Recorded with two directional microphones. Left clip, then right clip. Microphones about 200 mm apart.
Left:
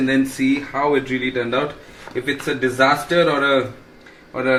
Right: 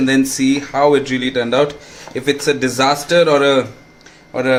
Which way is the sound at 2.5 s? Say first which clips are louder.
Right 1 dB; 70° right (ahead or behind).